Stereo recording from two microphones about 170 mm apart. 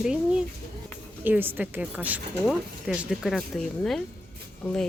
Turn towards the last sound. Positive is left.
turn(degrees=5)  # may be behind; listen again after turning